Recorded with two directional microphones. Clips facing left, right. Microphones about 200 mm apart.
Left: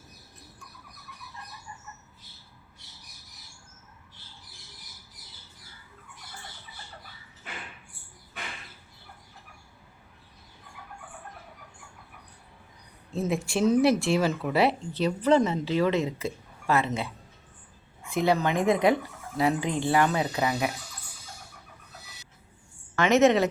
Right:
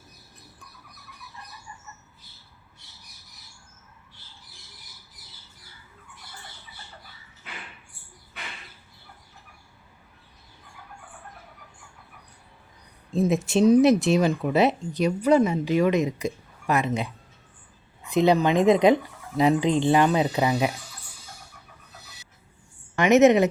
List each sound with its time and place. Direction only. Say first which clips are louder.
13.1 s speech: right 6 dB; 20° right (ahead or behind)
23.0 s speech: right 4 dB; 20° right (ahead or behind)